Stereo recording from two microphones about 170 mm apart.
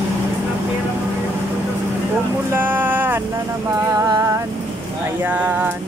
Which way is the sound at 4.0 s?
20° right (ahead or behind).